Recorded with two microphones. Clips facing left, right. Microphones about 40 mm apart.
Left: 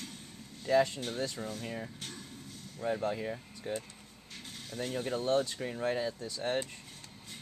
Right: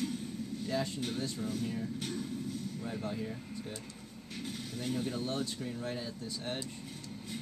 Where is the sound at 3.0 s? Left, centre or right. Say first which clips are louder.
Left 4 dB; left.